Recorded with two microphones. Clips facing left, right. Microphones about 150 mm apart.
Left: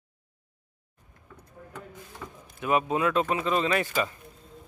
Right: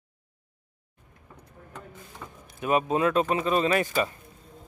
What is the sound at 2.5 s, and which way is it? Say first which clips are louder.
Speech: right 1 dB; 25° right (ahead or behind).